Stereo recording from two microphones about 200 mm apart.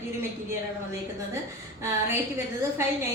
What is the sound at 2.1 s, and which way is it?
Speech, 10° right (ahead or behind).